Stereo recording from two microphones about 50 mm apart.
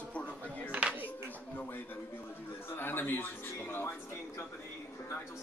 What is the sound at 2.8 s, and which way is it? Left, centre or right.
A man's voice, left.